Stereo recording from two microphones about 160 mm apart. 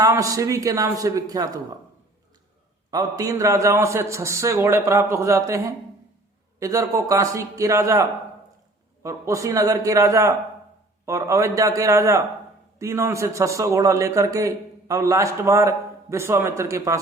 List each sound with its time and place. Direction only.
0.0 s a man's voice: 20° right (ahead or behind)
2.9 s a man's voice: 20° right (ahead or behind)
9.0 s a man's voice: 20° right (ahead or behind)